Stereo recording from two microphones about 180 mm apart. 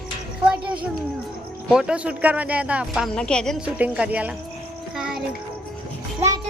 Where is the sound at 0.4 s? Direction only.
5° right (ahead or behind).